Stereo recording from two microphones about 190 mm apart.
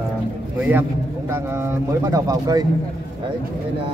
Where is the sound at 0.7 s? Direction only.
10° right (ahead or behind).